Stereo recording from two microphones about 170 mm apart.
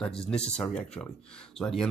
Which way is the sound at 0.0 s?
5° left (ahead or behind).